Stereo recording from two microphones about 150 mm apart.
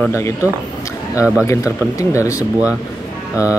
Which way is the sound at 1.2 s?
10° right (ahead or behind).